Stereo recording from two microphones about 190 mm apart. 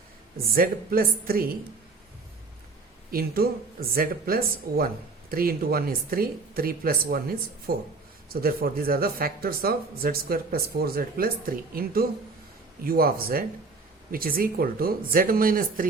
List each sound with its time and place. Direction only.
0.5 s speech: 50° right (ahead or behind)
3.1 s speech: 50° right (ahead or behind)